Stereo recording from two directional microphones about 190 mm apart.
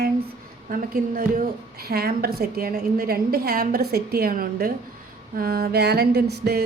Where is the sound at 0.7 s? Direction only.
50° right (ahead or behind).